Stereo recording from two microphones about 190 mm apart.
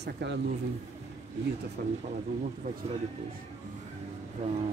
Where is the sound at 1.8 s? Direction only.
55° right (ahead or behind).